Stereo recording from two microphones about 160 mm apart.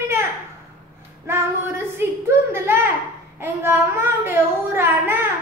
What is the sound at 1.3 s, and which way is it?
Female singing, 15° right (ahead or behind).